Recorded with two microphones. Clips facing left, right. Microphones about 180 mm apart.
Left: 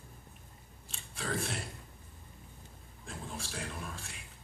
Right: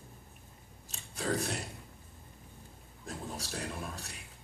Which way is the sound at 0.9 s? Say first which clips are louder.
Right 4 dB; 40° right (ahead or behind).